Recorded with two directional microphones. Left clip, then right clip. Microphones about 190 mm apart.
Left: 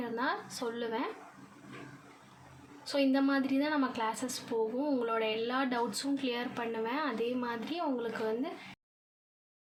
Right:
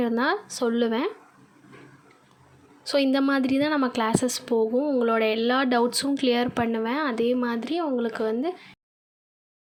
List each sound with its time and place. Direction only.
0.0 s a woman's voice: 45° right (ahead or behind)
2.8 s a woman's voice: 40° right (ahead or behind)